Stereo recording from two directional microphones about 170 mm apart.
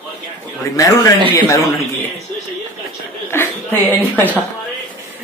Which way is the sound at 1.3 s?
15° left (ahead or behind).